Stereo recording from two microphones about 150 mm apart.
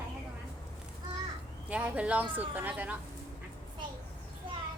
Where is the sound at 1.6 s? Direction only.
10° right (ahead or behind).